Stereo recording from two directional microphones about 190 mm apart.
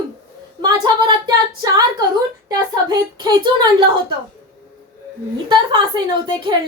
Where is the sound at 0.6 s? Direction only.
25° right (ahead or behind).